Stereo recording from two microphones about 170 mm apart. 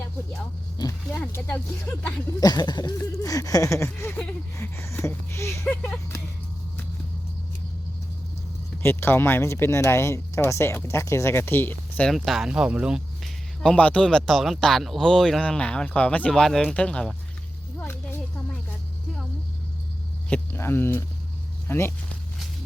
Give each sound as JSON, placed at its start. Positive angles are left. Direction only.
{"t": 0.3, "sound": "speech", "side_deg": 15}
{"t": 2.4, "sound": "speech", "side_deg": 25}
{"t": 8.8, "sound": "speech", "side_deg": 15}
{"t": 20.3, "sound": "speech", "side_deg": 15}